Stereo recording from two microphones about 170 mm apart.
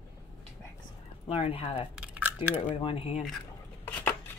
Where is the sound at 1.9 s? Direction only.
10° right (ahead or behind).